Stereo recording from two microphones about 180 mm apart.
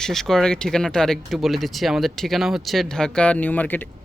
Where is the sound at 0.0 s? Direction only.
Centre (ahead or behind).